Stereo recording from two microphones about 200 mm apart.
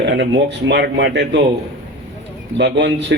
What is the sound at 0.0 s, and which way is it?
Speech, 60° right (ahead or behind).